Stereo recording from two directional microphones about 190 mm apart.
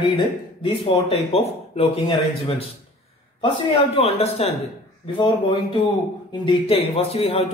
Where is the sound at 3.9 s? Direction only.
30° left (ahead or behind).